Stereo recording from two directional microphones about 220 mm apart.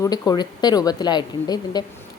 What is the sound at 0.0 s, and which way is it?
A woman's voice, 15° left (ahead or behind).